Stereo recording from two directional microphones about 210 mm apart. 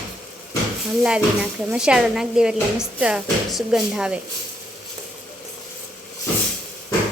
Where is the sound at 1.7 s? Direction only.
5° right (ahead or behind).